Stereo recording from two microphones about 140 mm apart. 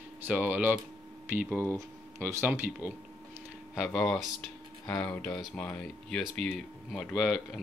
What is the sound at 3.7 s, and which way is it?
Speech, centre (ahead or behind).